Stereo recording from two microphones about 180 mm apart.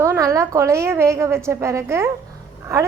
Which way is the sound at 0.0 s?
15° right (ahead or behind).